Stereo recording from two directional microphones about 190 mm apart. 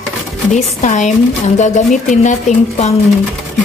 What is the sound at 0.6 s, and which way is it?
A woman's voice, 40° left (ahead or behind).